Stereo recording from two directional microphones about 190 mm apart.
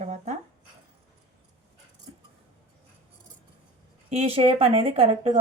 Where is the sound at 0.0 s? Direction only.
35° right (ahead or behind).